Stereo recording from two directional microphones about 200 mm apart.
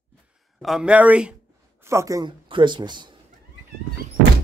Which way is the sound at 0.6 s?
Centre (ahead or behind).